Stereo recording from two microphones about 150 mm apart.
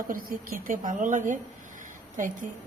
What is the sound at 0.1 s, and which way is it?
A woman's voice, 65° right (ahead or behind).